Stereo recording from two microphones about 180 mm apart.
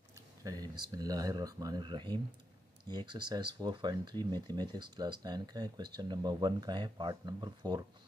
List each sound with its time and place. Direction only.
0.4 s speech: 20° right (ahead or behind)